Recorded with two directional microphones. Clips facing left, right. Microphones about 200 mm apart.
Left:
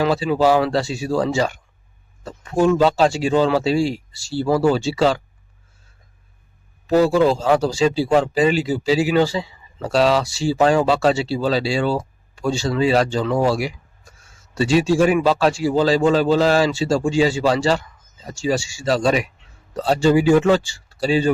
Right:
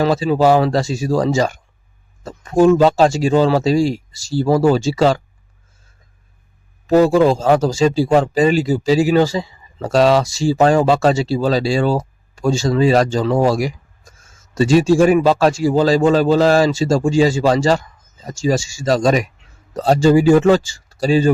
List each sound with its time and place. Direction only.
0.0 s speech: 40° right (ahead or behind)
6.8 s speech: 45° right (ahead or behind)
13.4 s a sound: 45° right (ahead or behind)
14.5 s speech: 45° right (ahead or behind)